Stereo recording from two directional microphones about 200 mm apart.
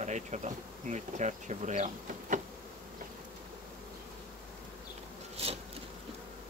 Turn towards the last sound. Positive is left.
turn(degrees=-30)  # may be behind; listen again after turning